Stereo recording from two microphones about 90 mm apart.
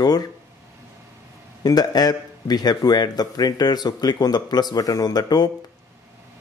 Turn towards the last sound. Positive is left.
turn(degrees=50)  # may be behind; listen again after turning